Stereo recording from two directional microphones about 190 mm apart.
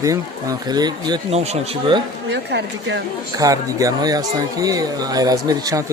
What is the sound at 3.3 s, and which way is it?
Speech, 20° right (ahead or behind).